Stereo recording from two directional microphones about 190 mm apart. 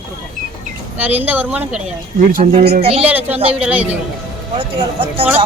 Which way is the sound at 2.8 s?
30° right (ahead or behind).